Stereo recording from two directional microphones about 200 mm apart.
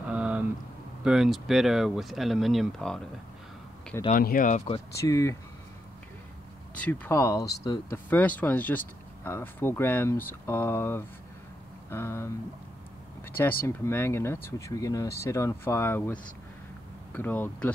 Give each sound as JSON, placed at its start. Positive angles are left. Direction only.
{"t": 0.1, "sound": "a sound", "side_deg": -5}
{"t": 1.0, "sound": "speech", "side_deg": 0}
{"t": 4.1, "sound": "speech", "side_deg": 45}
{"t": 4.9, "sound": "speech", "side_deg": 15}
{"t": 6.7, "sound": "speech", "side_deg": 5}
{"t": 13.3, "sound": "speech", "side_deg": 10}